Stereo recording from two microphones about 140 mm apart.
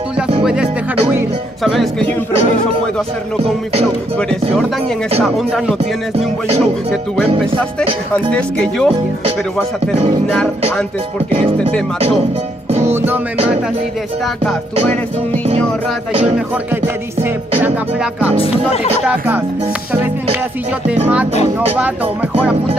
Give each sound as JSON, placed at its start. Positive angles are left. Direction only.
{"t": 0.4, "sound": "music", "side_deg": -5}
{"t": 1.6, "sound": "speech", "side_deg": 0}
{"t": 4.2, "sound": "speech", "side_deg": 5}
{"t": 8.1, "sound": "speech", "side_deg": 10}
{"t": 12.8, "sound": "music", "side_deg": -15}
{"t": 16.1, "sound": "music", "side_deg": -45}
{"t": 16.8, "sound": "music", "side_deg": -15}
{"t": 19.0, "sound": "music", "side_deg": -15}
{"t": 21.7, "sound": "music", "side_deg": -10}